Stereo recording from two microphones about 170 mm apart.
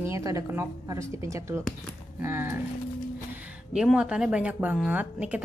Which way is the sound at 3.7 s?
5° right (ahead or behind).